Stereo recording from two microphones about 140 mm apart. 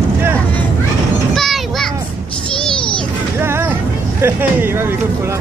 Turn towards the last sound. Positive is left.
turn(degrees=-15)  # may be behind; listen again after turning